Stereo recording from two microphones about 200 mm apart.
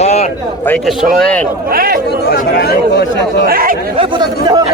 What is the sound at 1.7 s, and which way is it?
Speech, 45° right (ahead or behind).